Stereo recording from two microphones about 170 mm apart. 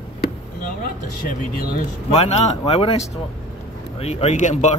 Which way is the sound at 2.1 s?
40° left (ahead or behind).